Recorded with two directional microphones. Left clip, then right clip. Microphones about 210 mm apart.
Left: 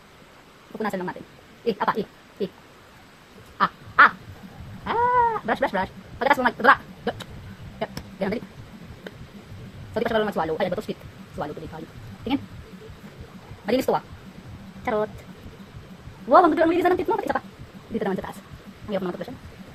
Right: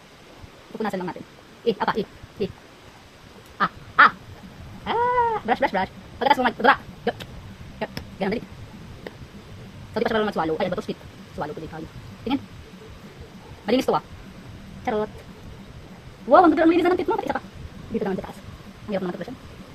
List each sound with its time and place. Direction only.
0.8 s a woman's voice: 15° right (ahead or behind)
3.6 s duck: 25° right (ahead or behind)
4.9 s bird: 20° right (ahead or behind)
7.8 s chicken: 20° right (ahead or behind)
9.9 s a woman's voice: 20° right (ahead or behind)
13.7 s a woman's voice: 20° right (ahead or behind)
16.3 s a woman's voice: 15° right (ahead or behind)
18.9 s speech: 20° right (ahead or behind)